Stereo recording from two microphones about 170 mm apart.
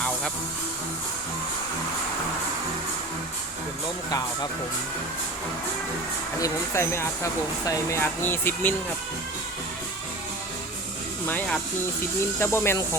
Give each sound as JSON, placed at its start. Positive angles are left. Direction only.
{"t": 6.4, "sound": "speech", "side_deg": 15}
{"t": 11.3, "sound": "speech", "side_deg": 5}